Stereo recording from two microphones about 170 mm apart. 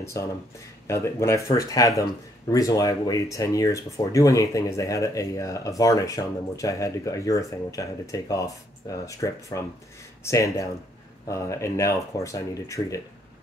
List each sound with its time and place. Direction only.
0.0 s speech: 15° left (ahead or behind)